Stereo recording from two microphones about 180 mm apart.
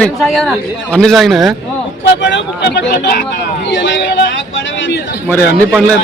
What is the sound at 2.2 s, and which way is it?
Speech, 75° left (ahead or behind).